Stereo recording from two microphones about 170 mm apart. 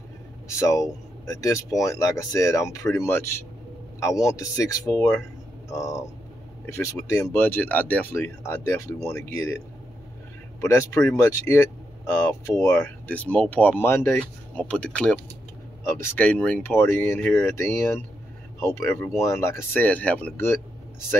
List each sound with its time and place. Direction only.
0.5 s speech: 20° left (ahead or behind)
10.6 s speech: 15° left (ahead or behind)